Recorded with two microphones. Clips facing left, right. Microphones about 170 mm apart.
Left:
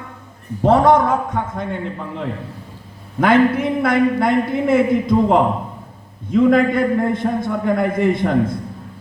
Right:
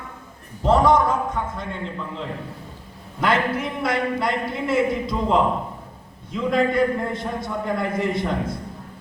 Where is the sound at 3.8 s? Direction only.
50° left (ahead or behind).